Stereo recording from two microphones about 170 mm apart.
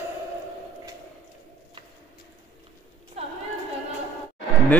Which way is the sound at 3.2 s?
35° right (ahead or behind).